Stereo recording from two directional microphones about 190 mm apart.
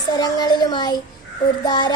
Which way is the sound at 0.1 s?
20° left (ahead or behind).